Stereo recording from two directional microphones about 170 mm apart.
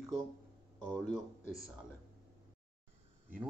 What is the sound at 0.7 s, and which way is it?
Speech, 5° left (ahead or behind).